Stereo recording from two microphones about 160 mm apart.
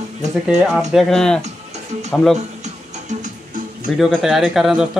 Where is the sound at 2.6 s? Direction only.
50° right (ahead or behind).